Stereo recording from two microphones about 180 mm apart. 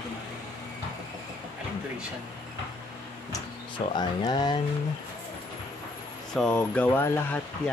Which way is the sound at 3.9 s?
25° left (ahead or behind).